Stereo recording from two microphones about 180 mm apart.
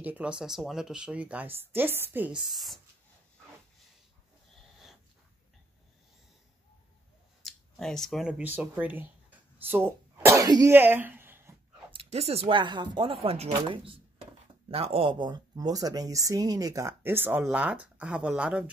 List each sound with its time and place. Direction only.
0.0 s speech: 5° right (ahead or behind)
7.4 s speech: centre (ahead or behind)
11.9 s speech: 35° right (ahead or behind); by 18.7 s 5° right (ahead or behind)